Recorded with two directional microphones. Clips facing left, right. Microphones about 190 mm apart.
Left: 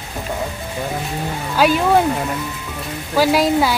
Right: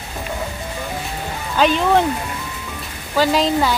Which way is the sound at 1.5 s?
10° left (ahead or behind).